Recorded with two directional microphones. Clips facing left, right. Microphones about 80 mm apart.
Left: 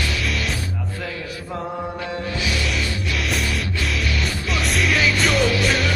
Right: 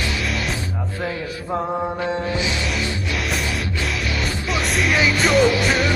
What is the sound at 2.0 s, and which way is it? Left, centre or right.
Music, right.